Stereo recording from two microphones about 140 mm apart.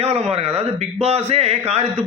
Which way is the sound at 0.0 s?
50° right (ahead or behind).